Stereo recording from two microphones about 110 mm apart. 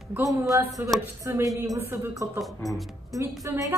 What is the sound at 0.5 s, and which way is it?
A woman's voice, 30° right (ahead or behind).